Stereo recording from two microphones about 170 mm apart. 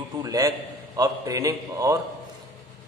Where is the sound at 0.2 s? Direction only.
20° right (ahead or behind).